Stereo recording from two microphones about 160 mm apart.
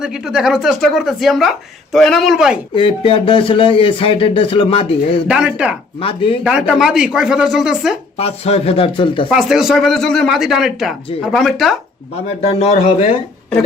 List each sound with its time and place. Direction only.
0.0 s speech: 5° right (ahead or behind)
2.7 s speech: 30° left (ahead or behind)
5.3 s speech: 5° right (ahead or behind)
6.0 s speech: 35° left (ahead or behind)
6.4 s speech: 5° right (ahead or behind)
8.2 s speech: 40° left (ahead or behind)
9.3 s speech: 5° right (ahead or behind)
12.4 s speech: 40° left (ahead or behind)